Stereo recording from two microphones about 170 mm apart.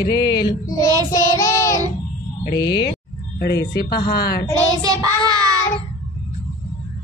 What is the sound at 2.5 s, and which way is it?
Music, 25° left (ahead or behind).